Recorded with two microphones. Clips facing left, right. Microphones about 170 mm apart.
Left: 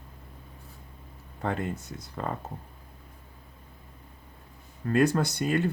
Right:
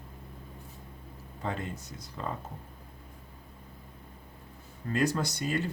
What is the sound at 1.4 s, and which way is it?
Speech, 55° left (ahead or behind).